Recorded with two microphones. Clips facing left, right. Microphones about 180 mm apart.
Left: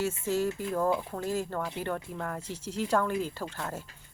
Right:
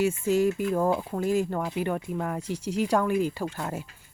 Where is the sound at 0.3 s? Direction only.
15° right (ahead or behind).